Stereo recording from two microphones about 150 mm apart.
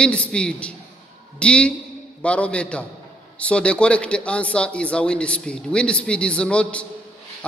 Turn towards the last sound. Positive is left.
turn(degrees=5)  # may be behind; listen again after turning